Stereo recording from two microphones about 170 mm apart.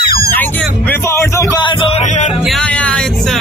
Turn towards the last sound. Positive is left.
turn(degrees=5)  # may be behind; listen again after turning